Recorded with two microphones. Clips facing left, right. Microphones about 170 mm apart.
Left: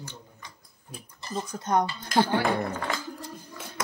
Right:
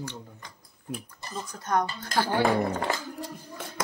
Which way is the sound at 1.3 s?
20° left (ahead or behind).